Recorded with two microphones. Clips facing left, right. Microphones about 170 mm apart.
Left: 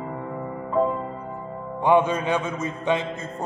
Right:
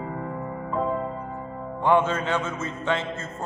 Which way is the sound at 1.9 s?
15° left (ahead or behind).